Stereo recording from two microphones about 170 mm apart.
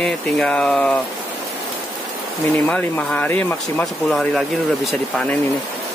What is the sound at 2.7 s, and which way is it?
Speech, 10° left (ahead or behind).